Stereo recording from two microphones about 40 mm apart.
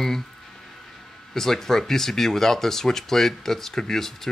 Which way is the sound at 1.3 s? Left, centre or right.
Centre.